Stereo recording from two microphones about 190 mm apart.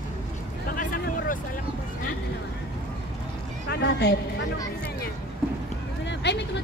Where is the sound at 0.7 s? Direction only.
45° left (ahead or behind).